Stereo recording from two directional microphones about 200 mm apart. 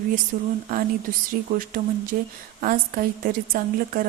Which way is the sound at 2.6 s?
45° right (ahead or behind).